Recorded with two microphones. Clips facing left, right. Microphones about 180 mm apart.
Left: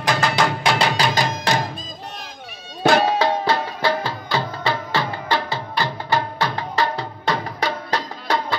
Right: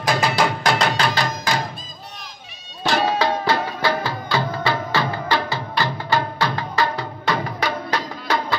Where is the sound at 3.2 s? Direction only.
25° left (ahead or behind).